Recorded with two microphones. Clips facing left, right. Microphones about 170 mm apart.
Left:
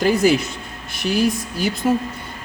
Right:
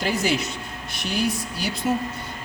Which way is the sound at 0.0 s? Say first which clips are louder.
Left 8 dB; 55° left (ahead or behind).